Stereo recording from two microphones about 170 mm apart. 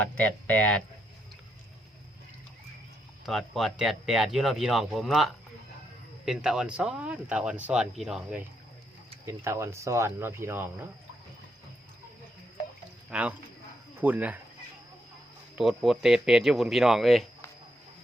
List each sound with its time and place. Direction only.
0.0 s speech: 10° left (ahead or behind)
3.2 s speech: centre (ahead or behind)
9.2 s speech: 15° right (ahead or behind)
13.1 s speech: 5° right (ahead or behind)
15.5 s speech: centre (ahead or behind)